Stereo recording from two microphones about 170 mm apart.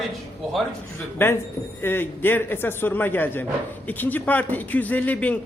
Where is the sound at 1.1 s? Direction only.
15° left (ahead or behind).